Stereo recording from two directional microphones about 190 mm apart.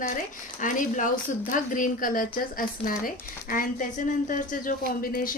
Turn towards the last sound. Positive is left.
turn(degrees=50)  # may be behind; listen again after turning